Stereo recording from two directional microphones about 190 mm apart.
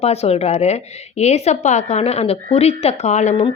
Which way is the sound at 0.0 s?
35° left (ahead or behind).